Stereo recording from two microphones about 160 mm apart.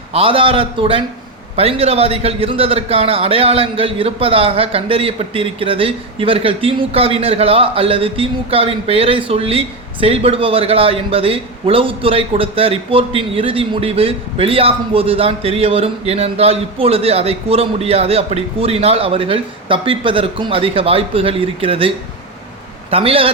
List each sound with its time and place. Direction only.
0.1 s a man's voice: 35° right (ahead or behind)